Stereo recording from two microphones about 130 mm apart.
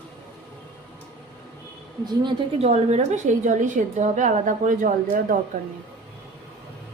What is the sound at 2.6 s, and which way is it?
A woman's voice, 55° right (ahead or behind).